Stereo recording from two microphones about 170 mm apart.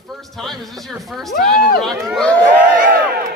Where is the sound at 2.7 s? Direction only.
55° right (ahead or behind).